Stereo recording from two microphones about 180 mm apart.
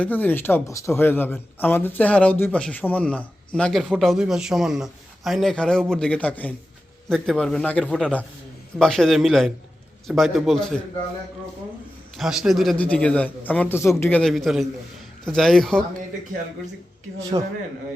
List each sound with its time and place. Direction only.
0.0 s a man's voice: 10° left (ahead or behind)
12.1 s a man's voice: centre (ahead or behind)
17.3 s a man's voice: 25° right (ahead or behind)